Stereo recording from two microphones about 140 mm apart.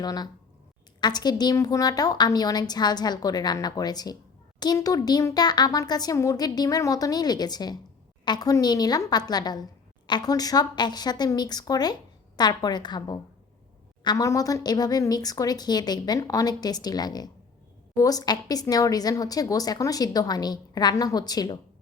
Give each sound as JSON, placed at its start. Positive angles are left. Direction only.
{"t": 0.0, "sound": "speech", "side_deg": 30}